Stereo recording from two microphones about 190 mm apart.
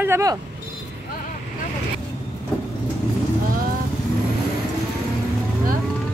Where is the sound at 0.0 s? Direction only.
15° right (ahead or behind).